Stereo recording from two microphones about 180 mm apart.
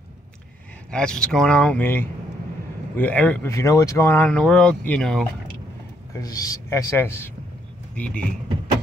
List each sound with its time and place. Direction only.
0.9 s speech: 5° left (ahead or behind)
6.1 s speech: 20° left (ahead or behind)